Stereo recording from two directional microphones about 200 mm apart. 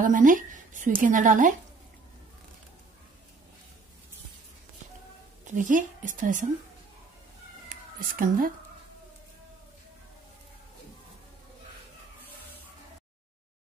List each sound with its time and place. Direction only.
0.0 s a woman's voice: 40° right (ahead or behind)
5.5 s a woman's voice: 40° right (ahead or behind)
7.7 s cat: 45° right (ahead or behind)